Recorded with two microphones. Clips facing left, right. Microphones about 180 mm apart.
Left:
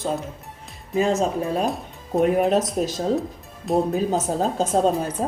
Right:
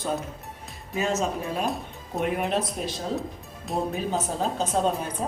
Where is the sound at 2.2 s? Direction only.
40° left (ahead or behind).